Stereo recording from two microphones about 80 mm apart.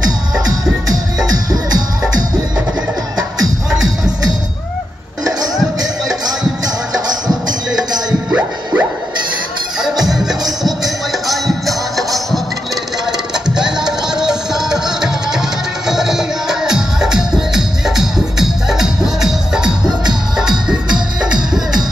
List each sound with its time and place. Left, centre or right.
0.8 s music: right
5.2 s music: right
8.3 s music: right
10.0 s music: centre